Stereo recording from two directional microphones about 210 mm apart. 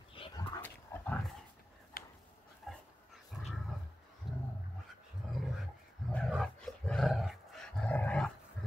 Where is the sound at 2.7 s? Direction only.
Centre (ahead or behind).